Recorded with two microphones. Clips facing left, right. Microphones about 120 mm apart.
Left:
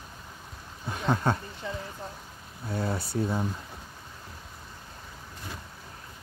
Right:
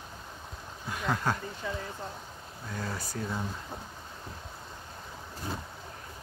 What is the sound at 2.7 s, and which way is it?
Speech, 30° left (ahead or behind).